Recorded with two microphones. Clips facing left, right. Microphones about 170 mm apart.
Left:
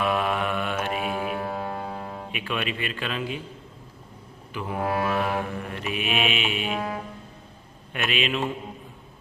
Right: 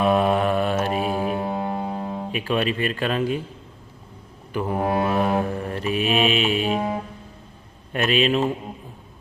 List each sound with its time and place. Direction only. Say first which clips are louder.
0.0 s mantra: right 6 dB; 35° right (ahead or behind)
2.3 s speech: right 7 dB; 35° right (ahead or behind)
4.5 s speech: right 7 dB; 45° right (ahead or behind)
4.8 s mantra: right 3 dB; 25° right (ahead or behind)
7.9 s mantra: right 7 dB; 35° right (ahead or behind)